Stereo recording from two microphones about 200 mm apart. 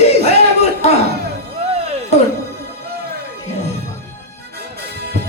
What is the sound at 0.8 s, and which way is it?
Music, 30° left (ahead or behind).